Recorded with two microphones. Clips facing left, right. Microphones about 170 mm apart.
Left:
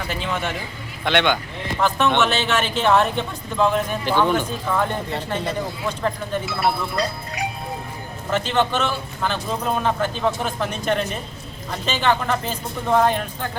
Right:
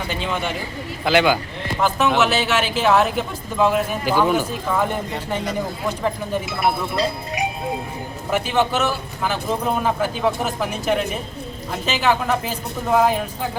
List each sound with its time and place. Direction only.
1.0 s a man's voice: 5° right (ahead or behind); by 7.4 s 25° right (ahead or behind)
8.3 s a man's voice: 10° right (ahead or behind)